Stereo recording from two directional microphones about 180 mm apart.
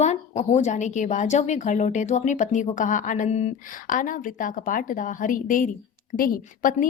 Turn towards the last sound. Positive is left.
turn(degrees=50)  # may be behind; listen again after turning